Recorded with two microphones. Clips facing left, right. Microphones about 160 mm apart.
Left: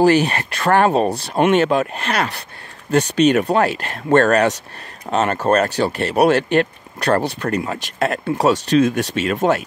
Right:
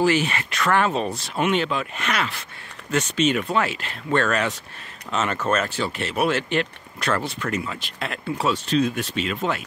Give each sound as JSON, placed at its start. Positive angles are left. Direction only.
{"t": 0.0, "sound": "speech", "side_deg": 40}
{"t": 8.6, "sound": "speech", "side_deg": 70}
{"t": 9.2, "sound": "speech", "side_deg": 45}